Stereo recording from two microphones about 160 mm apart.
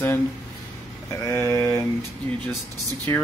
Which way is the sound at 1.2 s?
15° left (ahead or behind).